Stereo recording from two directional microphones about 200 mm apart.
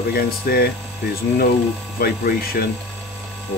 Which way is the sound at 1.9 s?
50° left (ahead or behind).